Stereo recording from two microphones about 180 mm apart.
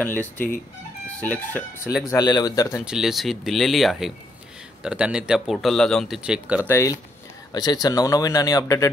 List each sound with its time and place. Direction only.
0.0 s speech: 10° left (ahead or behind)
2.0 s speech: 20° left (ahead or behind)
2.8 s speech: 5° right (ahead or behind)
6.7 s speech: 15° left (ahead or behind)